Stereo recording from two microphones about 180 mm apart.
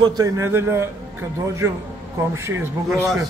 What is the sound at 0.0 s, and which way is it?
Speech, 15° right (ahead or behind).